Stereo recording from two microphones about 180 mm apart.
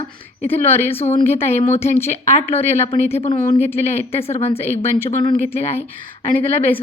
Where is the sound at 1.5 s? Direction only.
35° left (ahead or behind).